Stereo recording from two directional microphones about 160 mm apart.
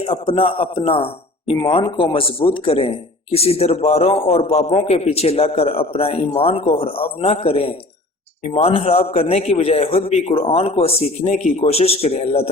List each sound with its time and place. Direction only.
0.0 s a man's voice: 35° left (ahead or behind)